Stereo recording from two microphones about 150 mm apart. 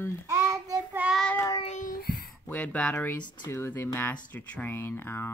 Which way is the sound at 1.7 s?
65° left (ahead or behind).